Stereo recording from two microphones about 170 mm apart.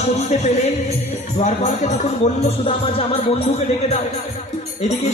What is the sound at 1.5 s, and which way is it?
Speech, 40° left (ahead or behind).